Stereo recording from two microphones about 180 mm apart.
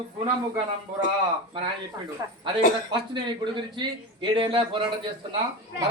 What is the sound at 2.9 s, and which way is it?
A man's voice, 25° right (ahead or behind).